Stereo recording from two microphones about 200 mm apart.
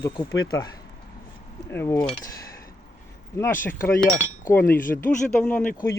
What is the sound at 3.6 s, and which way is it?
Speech, 15° left (ahead or behind).